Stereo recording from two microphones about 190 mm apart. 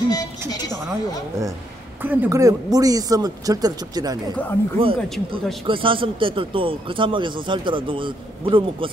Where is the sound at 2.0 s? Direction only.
10° right (ahead or behind).